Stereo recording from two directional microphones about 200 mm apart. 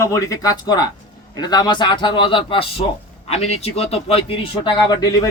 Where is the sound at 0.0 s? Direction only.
15° left (ahead or behind).